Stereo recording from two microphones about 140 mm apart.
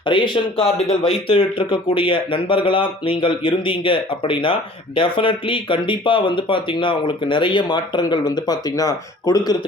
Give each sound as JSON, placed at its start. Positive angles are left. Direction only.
{"t": 0.0, "sound": "speech", "side_deg": 35}